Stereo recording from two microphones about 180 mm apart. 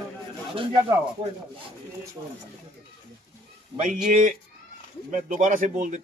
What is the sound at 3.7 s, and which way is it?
Speech, 45° right (ahead or behind).